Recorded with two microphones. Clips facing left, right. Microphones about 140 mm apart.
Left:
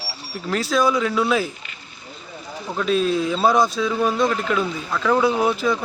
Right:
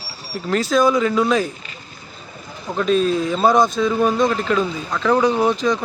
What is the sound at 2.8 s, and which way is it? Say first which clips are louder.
Speech: right 2 dB; 5° left (ahead or behind).